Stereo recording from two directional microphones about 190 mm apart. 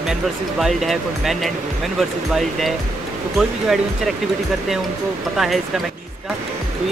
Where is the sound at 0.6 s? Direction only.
Centre (ahead or behind).